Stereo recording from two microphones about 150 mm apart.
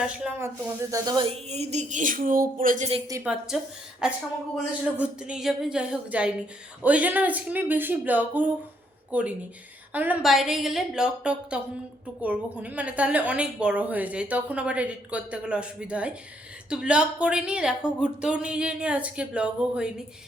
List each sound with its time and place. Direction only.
0.2 s speech: 15° right (ahead or behind)
1.3 s speech: 45° right (ahead or behind); by 2.9 s 60° right (ahead or behind)
3.5 s a woman's voice: centre (ahead or behind)